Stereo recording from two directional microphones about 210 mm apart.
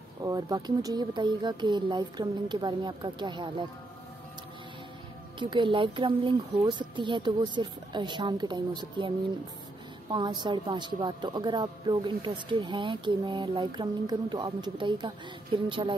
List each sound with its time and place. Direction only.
0.2 s speech: 20° right (ahead or behind)
5.4 s speech: 25° right (ahead or behind)
10.1 s speech: 20° right (ahead or behind)